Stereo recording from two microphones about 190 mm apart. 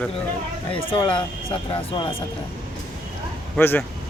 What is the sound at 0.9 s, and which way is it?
Speech, 25° left (ahead or behind).